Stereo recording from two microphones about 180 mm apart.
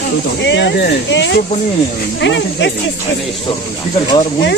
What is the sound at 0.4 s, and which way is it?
Speech, 75° left (ahead or behind).